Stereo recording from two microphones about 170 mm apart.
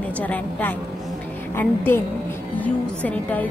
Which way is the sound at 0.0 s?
10° left (ahead or behind).